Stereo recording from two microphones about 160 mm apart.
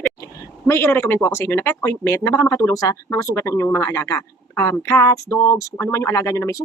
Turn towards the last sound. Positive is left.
turn(degrees=20)  # may be behind; listen again after turning